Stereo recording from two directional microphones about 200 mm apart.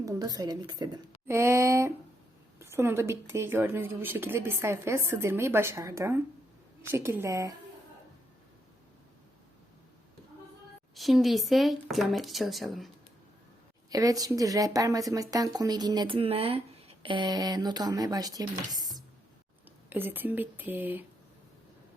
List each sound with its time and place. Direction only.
0.0 s speech: 20° right (ahead or behind)
10.9 s speech: centre (ahead or behind)
13.9 s speech: 20° right (ahead or behind)